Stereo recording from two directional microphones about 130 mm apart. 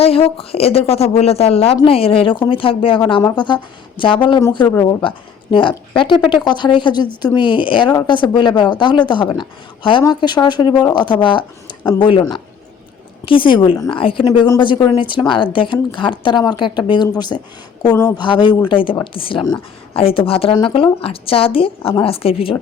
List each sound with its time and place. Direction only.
0.0 s a woman's voice: 50° left (ahead or behind)
4.7 s speech: 25° left (ahead or behind)
5.0 s a woman's voice: 40° left (ahead or behind)
14.3 s a woman's voice: 30° left (ahead or behind); by 22.5 s 45° left (ahead or behind)